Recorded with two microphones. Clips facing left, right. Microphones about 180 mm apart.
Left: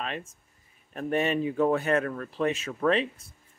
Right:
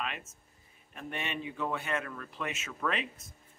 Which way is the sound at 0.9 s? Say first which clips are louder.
Left 12 dB; 40° left (ahead or behind).